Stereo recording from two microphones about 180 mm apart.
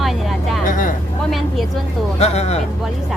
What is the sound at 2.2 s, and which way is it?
Speech, 35° left (ahead or behind).